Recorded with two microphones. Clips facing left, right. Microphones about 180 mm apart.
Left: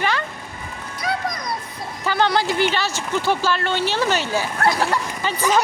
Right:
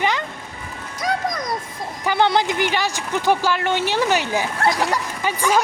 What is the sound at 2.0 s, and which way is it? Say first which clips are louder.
Speech: right 1 dB; 15° right (ahead or behind).